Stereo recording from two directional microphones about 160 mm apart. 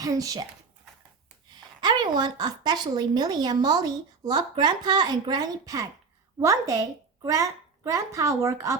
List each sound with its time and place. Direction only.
0.0 s speech: 20° right (ahead or behind)
1.8 s speech: 25° right (ahead or behind)